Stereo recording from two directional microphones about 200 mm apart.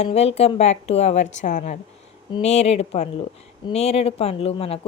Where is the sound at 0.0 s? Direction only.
30° left (ahead or behind).